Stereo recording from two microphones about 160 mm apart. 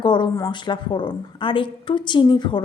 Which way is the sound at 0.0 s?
30° left (ahead or behind).